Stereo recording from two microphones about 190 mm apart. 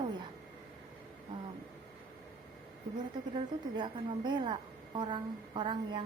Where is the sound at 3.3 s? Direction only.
25° right (ahead or behind).